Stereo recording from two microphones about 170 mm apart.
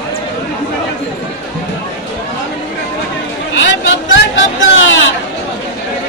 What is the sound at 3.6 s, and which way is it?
Speech, 90° left.